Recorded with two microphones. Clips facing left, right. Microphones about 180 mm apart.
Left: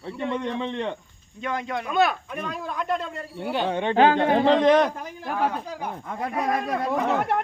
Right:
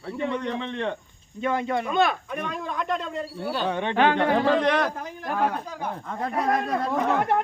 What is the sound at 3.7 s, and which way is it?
Speech, 30° left (ahead or behind).